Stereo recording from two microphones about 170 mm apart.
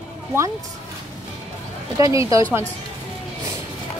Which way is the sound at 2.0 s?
20° right (ahead or behind).